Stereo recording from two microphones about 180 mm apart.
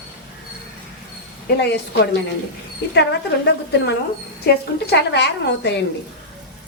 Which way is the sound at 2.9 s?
70° left (ahead or behind).